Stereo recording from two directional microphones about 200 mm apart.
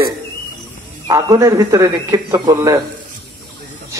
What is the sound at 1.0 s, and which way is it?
Speech, 15° right (ahead or behind).